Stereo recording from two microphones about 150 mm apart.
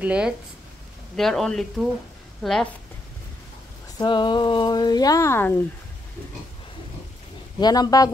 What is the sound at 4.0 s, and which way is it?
Speech, 30° left (ahead or behind).